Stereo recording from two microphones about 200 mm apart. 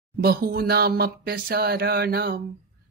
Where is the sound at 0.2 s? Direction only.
50° right (ahead or behind).